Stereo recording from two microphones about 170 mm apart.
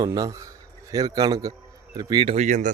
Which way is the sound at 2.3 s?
45° right (ahead or behind).